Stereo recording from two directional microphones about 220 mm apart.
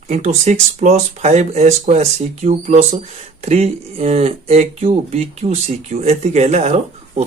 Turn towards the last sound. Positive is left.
turn(degrees=-30)  # may be behind; listen again after turning